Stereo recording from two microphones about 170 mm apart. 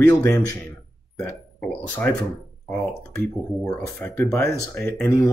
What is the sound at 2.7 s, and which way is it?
Speech, 5° left (ahead or behind).